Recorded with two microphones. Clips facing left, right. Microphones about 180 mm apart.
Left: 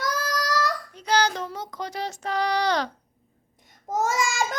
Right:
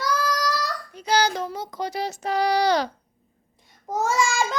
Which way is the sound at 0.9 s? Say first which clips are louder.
Right 2 dB; 10° right (ahead or behind).